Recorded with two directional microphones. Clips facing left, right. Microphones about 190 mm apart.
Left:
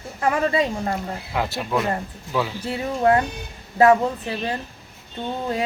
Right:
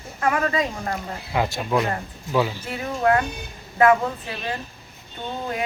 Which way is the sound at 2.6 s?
25° left (ahead or behind).